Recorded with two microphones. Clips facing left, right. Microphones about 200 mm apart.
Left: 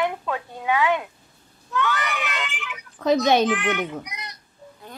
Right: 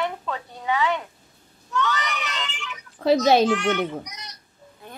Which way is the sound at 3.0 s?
30° right (ahead or behind).